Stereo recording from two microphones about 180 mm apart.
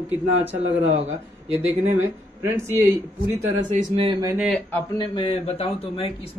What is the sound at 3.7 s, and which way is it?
Speech, 35° right (ahead or behind).